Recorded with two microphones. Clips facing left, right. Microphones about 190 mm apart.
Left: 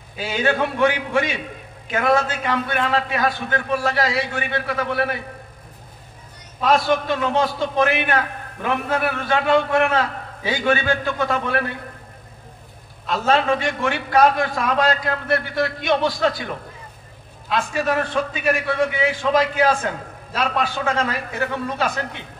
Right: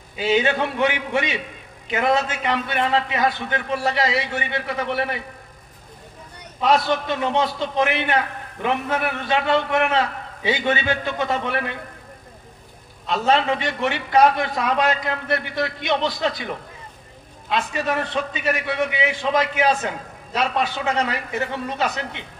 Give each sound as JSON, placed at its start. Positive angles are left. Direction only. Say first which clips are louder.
{"t": 0.2, "sound": "a man's voice", "louder": "right 1 dB", "side_deg": -20}
{"t": 6.6, "sound": "a man's voice", "louder": "left 1 dB", "side_deg": -20}
{"t": 13.0, "sound": "a man's voice", "louder": "even", "side_deg": -20}
{"t": 17.5, "sound": "a man's voice", "louder": "left 2 dB", "side_deg": -20}